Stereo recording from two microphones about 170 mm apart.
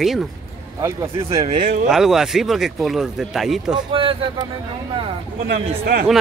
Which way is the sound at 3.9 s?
30° right (ahead or behind).